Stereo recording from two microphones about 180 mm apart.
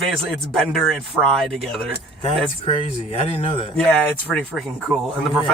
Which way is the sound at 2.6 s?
30° left (ahead or behind).